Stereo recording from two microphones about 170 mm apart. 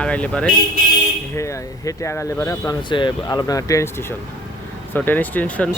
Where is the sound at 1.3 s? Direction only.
15° left (ahead or behind).